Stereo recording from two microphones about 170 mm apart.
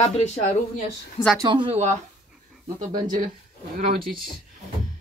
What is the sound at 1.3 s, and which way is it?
Speech, 30° right (ahead or behind).